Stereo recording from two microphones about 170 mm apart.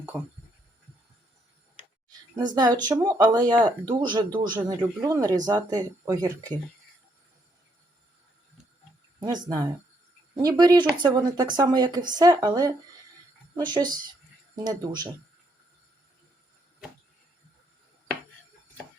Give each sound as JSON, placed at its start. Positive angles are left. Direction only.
{"t": 2.6, "sound": "speech", "side_deg": -25}
{"t": 9.2, "sound": "speech", "side_deg": -20}